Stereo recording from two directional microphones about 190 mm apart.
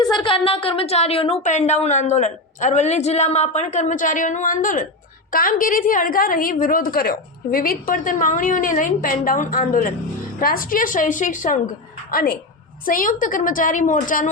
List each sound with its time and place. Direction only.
0.2 s a woman's voice: 30° left (ahead or behind); by 14.3 s 45° left (ahead or behind)